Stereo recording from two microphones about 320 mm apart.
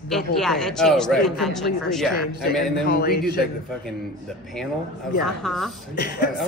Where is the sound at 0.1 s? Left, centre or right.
Centre.